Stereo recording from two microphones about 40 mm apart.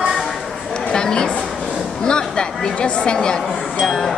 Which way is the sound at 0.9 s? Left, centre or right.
Centre.